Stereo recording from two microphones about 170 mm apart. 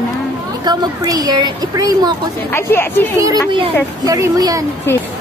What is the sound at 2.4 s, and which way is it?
Speech, 15° left (ahead or behind).